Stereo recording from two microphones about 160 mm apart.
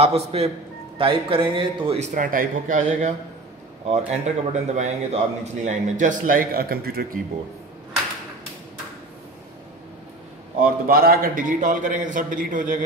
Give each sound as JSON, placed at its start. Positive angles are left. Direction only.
{"t": 0.0, "sound": "speech", "side_deg": -40}
{"t": 2.0, "sound": "speech", "side_deg": -50}
{"t": 4.1, "sound": "a man's voice", "side_deg": -45}
{"t": 10.6, "sound": "a man's voice", "side_deg": -70}